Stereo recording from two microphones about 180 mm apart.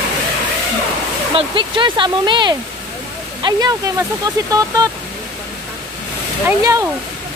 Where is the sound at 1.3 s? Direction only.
25° right (ahead or behind).